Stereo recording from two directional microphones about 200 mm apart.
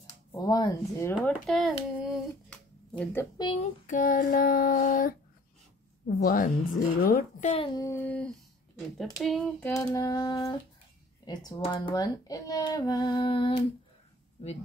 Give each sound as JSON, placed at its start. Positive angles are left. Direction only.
{"t": 0.0, "sound": "speech", "side_deg": 15}
{"t": 3.0, "sound": "a sound", "side_deg": 10}
{"t": 3.3, "sound": "speech", "side_deg": 25}
{"t": 3.8, "sound": "a woman's voice", "side_deg": 40}
{"t": 7.5, "sound": "a sound", "side_deg": 20}
{"t": 11.2, "sound": "speech", "side_deg": 25}